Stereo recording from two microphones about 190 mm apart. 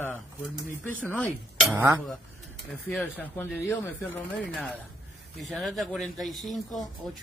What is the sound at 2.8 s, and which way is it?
Speech, 5° left (ahead or behind).